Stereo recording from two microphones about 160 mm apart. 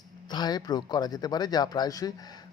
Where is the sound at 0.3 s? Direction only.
25° left (ahead or behind).